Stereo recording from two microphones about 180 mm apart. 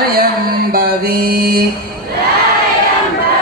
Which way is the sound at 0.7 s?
55° right (ahead or behind).